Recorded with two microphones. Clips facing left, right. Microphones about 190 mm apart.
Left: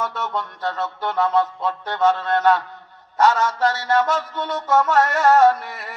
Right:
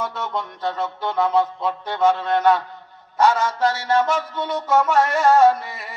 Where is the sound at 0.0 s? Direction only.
10° right (ahead or behind).